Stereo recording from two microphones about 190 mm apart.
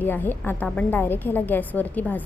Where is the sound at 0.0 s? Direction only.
10° left (ahead or behind).